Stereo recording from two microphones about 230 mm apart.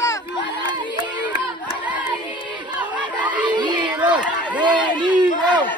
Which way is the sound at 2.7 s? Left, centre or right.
Centre.